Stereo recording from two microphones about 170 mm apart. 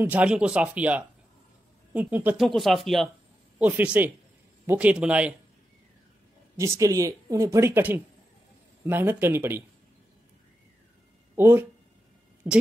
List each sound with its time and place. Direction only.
0.0 s speech: 10° right (ahead or behind)
2.4 s speech: centre (ahead or behind)
6.6 s speech: 20° right (ahead or behind)
11.3 s speech: 15° right (ahead or behind)